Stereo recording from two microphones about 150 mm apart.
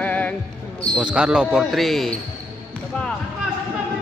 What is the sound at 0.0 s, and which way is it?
Basketball bounce, 10° left (ahead or behind).